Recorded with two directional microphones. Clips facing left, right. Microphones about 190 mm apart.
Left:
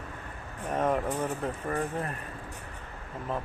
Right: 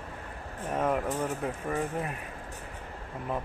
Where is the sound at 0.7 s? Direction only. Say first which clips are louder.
Left 1 dB; 5° right (ahead or behind).